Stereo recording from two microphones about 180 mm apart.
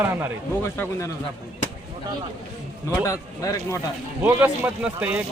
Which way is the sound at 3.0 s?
20° left (ahead or behind).